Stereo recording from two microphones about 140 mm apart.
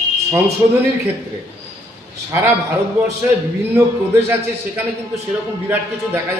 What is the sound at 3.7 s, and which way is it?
Speech, 15° right (ahead or behind).